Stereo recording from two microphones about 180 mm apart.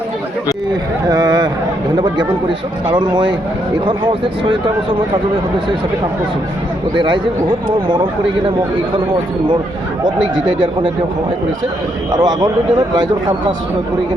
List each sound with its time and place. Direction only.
1.0 s speech: 25° right (ahead or behind)
2.8 s speech: 25° right (ahead or behind)
6.9 s speech: 25° right (ahead or behind)
12.1 s speech: 20° right (ahead or behind)